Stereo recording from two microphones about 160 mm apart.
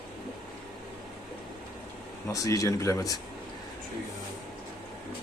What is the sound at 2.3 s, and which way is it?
Speech, 20° left (ahead or behind).